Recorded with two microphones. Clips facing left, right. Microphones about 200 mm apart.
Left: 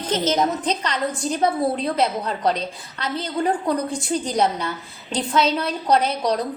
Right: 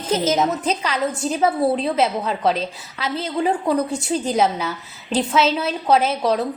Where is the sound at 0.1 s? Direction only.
5° right (ahead or behind).